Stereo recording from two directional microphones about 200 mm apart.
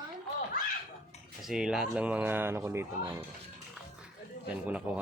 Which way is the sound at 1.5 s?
5° right (ahead or behind).